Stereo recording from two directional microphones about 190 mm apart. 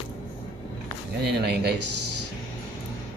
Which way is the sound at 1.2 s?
60° right (ahead or behind).